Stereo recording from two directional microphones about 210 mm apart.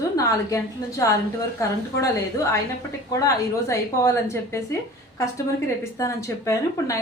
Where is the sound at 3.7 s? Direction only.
15° left (ahead or behind).